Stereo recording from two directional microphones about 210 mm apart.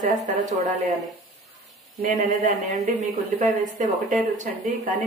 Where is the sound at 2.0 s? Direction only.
35° right (ahead or behind).